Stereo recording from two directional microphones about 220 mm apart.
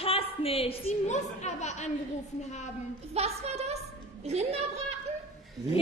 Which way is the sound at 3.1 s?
30° right (ahead or behind).